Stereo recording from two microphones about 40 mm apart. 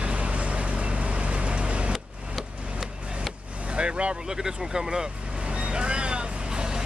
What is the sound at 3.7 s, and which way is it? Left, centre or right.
Vehicle, right.